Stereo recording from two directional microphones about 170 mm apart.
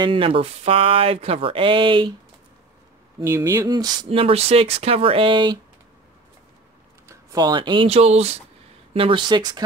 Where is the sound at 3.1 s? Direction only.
15° right (ahead or behind).